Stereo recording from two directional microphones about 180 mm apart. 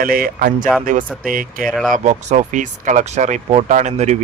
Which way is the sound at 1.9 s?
40° right (ahead or behind).